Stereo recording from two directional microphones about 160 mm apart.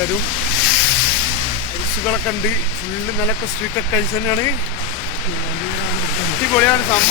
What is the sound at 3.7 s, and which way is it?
Speech, 15° left (ahead or behind).